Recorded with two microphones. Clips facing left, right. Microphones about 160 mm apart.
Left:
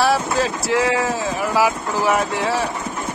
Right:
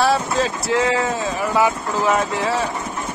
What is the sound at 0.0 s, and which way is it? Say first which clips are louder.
Speech: even; centre (ahead or behind).